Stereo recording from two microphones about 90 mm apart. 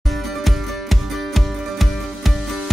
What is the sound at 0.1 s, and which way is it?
Music, centre (ahead or behind).